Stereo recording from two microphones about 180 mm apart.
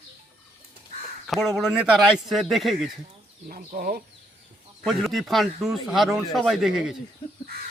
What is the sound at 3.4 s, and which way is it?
Speech, 50° right (ahead or behind).